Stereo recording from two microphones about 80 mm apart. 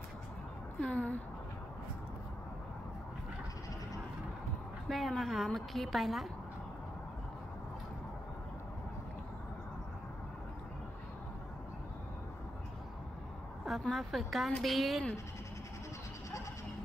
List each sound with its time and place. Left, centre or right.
0.7 s a woman's voice: centre
4.8 s a woman's voice: centre
13.7 s a woman's voice: centre